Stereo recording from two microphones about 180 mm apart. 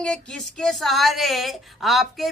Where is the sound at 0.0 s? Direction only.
5° left (ahead or behind).